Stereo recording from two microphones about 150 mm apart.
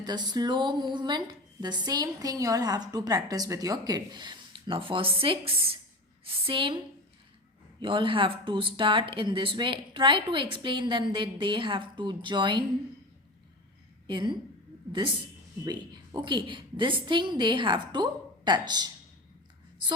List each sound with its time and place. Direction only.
0.0 s a woman's voice: 30° right (ahead or behind)
7.8 s speech: 35° right (ahead or behind)
14.1 s speech: 30° right (ahead or behind)
15.6 s speech: 30° right (ahead or behind)